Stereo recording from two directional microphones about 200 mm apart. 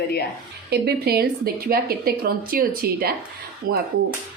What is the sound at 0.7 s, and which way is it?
Speech, 50° right (ahead or behind).